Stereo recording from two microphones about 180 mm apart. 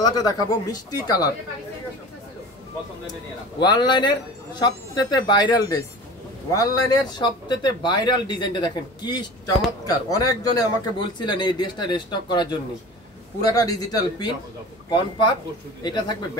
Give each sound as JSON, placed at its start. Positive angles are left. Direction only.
{"t": 0.0, "sound": "speech", "side_deg": 20}
{"t": 3.5, "sound": "speech", "side_deg": 25}